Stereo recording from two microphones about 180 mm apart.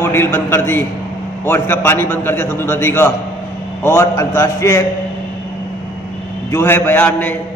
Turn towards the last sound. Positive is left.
turn(degrees=10)  # may be behind; listen again after turning